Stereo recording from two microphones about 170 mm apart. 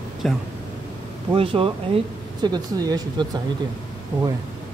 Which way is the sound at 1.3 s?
30° right (ahead or behind).